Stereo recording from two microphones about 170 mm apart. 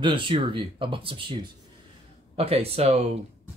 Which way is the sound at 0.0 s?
30° right (ahead or behind).